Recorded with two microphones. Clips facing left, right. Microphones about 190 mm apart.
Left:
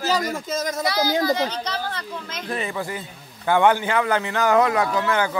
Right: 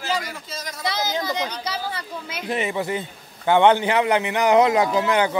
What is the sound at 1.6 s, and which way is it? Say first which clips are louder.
Speech: even; 10° right (ahead or behind).